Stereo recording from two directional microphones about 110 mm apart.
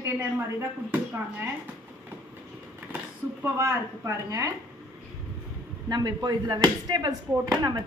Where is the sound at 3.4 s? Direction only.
25° right (ahead or behind).